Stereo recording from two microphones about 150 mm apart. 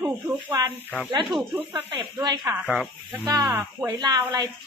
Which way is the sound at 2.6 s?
5° right (ahead or behind).